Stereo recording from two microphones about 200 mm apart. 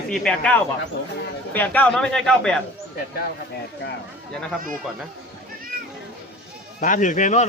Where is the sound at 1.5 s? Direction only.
10° left (ahead or behind).